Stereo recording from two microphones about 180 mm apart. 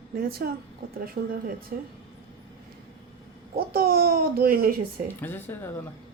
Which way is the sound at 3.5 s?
55° right (ahead or behind).